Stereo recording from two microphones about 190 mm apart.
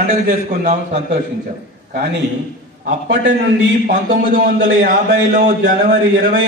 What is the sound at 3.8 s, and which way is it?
A man's voice, 45° right (ahead or behind).